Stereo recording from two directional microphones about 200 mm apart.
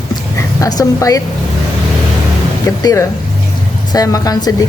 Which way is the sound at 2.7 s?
15° left (ahead or behind).